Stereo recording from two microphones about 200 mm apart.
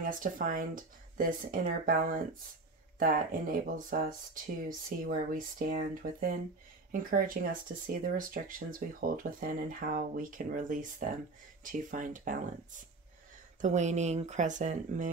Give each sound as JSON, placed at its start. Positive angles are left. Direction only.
{"t": 0.0, "sound": "speech", "side_deg": -40}
{"t": 13.6, "sound": "speech", "side_deg": -35}